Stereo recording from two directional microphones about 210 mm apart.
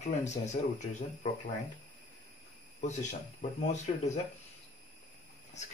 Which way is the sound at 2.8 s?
35° left (ahead or behind).